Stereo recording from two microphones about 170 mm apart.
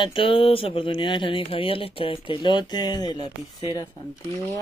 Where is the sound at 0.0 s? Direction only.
30° left (ahead or behind).